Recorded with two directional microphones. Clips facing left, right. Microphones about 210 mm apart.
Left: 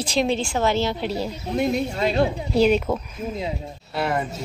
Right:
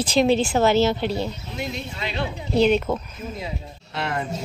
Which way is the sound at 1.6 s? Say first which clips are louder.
Left 10 dB; 50° left (ahead or behind).